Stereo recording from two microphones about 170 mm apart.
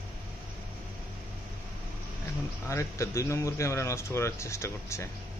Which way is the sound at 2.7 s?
15° left (ahead or behind).